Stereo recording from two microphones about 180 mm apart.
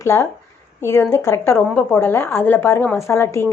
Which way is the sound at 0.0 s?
15° left (ahead or behind).